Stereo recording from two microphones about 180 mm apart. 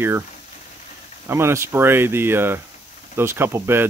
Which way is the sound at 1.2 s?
15° right (ahead or behind).